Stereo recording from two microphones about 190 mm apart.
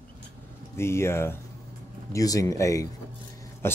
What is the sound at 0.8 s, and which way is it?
Speech, 15° left (ahead or behind).